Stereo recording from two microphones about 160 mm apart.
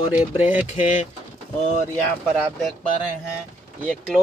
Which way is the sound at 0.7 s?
40° left (ahead or behind).